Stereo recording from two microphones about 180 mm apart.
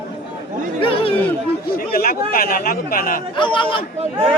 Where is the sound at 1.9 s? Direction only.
55° left (ahead or behind).